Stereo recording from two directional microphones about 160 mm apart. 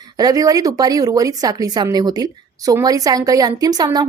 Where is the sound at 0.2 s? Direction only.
25° right (ahead or behind).